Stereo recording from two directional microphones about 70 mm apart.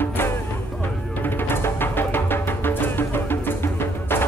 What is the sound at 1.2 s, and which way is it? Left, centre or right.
Music, left.